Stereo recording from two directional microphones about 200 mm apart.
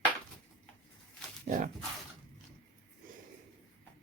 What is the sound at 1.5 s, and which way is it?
Speech, 35° right (ahead or behind).